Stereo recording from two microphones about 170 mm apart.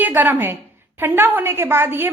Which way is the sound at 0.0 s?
10° right (ahead or behind).